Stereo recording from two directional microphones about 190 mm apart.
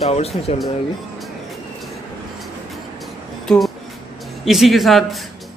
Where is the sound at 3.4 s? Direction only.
Centre (ahead or behind).